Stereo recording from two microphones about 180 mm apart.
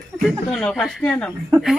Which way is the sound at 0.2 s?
Centre (ahead or behind).